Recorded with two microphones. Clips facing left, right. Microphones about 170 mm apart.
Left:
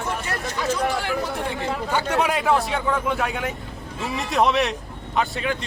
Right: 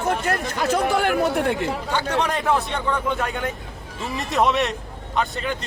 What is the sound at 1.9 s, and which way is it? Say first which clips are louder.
Speech: left 2 dB; 10° left (ahead or behind).